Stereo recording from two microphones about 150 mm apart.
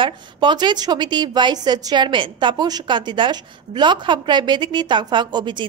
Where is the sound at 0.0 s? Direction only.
30° right (ahead or behind).